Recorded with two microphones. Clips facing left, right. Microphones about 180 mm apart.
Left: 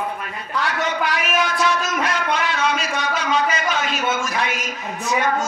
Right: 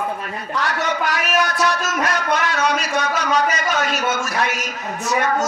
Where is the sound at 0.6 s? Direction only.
45° right (ahead or behind).